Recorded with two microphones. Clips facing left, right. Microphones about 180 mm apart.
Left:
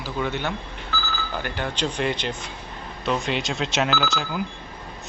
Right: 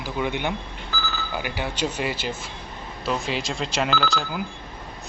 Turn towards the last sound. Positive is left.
turn(degrees=0)  # may be behind; listen again after turning